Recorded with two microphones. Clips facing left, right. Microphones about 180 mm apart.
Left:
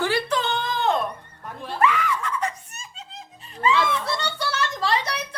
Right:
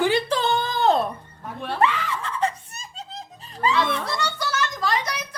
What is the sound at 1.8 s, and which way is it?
Snicker, 30° right (ahead or behind).